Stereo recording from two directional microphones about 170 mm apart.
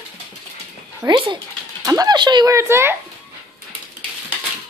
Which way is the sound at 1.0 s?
30° right (ahead or behind).